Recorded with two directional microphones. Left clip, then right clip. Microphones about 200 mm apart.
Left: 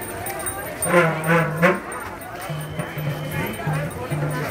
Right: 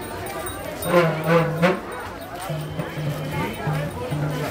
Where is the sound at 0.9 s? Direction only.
5° left (ahead or behind).